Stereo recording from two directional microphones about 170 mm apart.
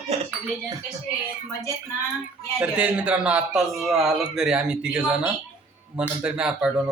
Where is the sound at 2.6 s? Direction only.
5° right (ahead or behind).